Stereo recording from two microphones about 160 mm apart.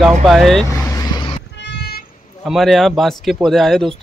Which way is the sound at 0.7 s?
20° left (ahead or behind).